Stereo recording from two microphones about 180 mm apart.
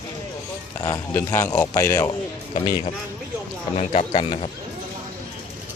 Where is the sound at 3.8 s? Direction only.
30° left (ahead or behind).